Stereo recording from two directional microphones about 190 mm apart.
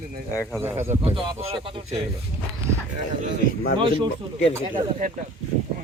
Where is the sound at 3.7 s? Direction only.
25° right (ahead or behind).